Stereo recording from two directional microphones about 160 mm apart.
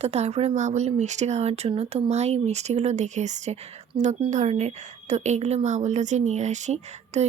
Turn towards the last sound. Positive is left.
turn(degrees=-45)  # may be behind; listen again after turning